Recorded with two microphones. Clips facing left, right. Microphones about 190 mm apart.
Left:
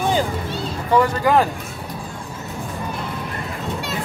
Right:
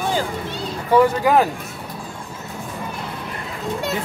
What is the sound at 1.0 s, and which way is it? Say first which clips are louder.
Speech: right 1 dB; 5° right (ahead or behind).